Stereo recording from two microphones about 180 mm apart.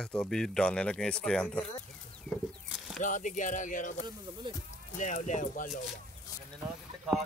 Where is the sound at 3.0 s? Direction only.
45° left (ahead or behind).